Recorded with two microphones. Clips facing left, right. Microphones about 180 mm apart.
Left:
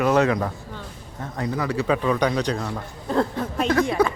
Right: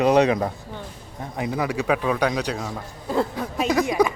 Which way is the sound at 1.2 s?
15° right (ahead or behind).